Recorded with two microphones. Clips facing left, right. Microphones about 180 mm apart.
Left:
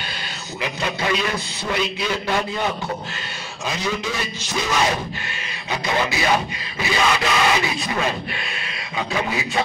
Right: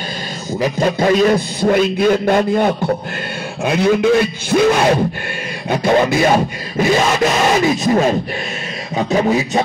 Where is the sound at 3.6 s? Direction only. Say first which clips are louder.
Right 12 dB; 60° right (ahead or behind).